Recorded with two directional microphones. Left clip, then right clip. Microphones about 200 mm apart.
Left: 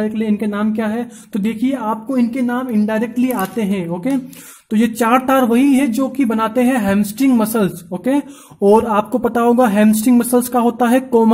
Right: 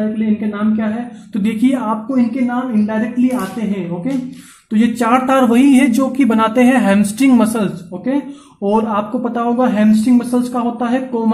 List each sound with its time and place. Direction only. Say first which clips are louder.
0.2 s speech: even; 50° left (ahead or behind)
1.4 s speech: right 3 dB; 25° left (ahead or behind)
2.0 s speech: right 1 dB; 40° left (ahead or behind)
4.7 s speech: even; 30° left (ahead or behind)